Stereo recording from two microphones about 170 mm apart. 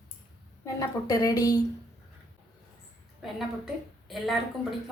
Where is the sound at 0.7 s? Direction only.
20° left (ahead or behind).